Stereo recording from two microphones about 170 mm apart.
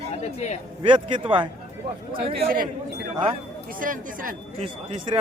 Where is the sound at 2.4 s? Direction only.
60° right (ahead or behind).